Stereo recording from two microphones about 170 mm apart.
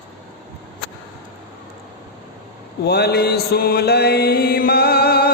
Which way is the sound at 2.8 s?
70° left (ahead or behind).